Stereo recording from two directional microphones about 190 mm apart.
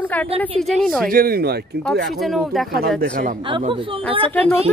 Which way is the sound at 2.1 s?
Centre (ahead or behind).